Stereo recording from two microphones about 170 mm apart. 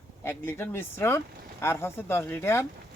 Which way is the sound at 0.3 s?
15° left (ahead or behind).